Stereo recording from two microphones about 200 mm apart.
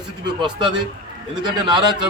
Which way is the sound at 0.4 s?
20° right (ahead or behind).